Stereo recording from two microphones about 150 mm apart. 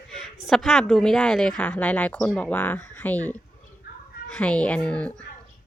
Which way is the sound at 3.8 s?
90° left.